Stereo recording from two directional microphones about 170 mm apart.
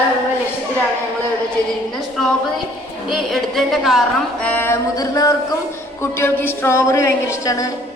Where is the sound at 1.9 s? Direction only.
Centre (ahead or behind).